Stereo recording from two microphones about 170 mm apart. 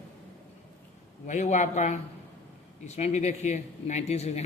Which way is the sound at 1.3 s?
45° left (ahead or behind).